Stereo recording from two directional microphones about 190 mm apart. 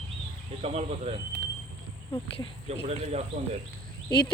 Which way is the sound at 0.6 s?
35° right (ahead or behind).